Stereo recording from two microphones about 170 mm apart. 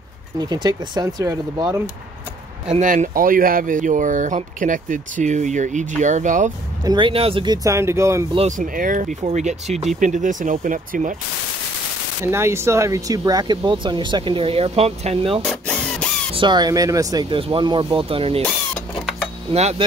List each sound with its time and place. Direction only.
0.4 s speech: 25° right (ahead or behind)
2.7 s speech: 45° right (ahead or behind)
6.8 s speech: 25° right (ahead or behind)
8.5 s speech: 50° right (ahead or behind)
12.3 s speech: 15° right (ahead or behind); by 15.4 s 35° right (ahead or behind)
15.4 s tools: 5° left (ahead or behind)
16.3 s speech: 25° right (ahead or behind)
19.5 s speech: 40° right (ahead or behind)